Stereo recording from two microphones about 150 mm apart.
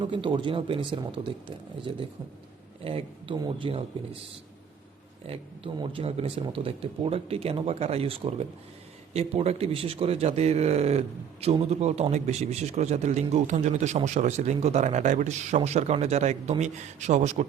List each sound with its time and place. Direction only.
0.0 s speech: 35° right (ahead or behind)
5.2 s a man's voice: 40° right (ahead or behind)